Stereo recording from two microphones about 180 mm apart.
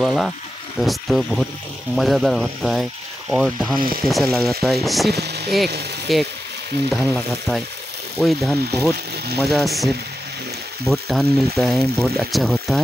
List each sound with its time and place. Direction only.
0.0 s speech: centre (ahead or behind)
5.1 s speech: 65° right (ahead or behind)
6.1 s speech: centre (ahead or behind)